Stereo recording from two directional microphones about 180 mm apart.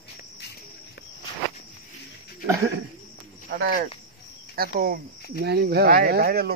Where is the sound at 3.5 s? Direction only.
60° right (ahead or behind).